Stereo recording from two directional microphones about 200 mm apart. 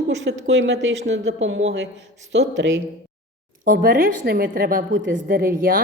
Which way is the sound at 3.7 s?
45° right (ahead or behind).